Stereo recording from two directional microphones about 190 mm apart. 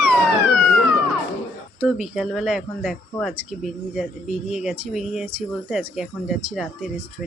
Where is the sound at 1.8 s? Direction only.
5° right (ahead or behind).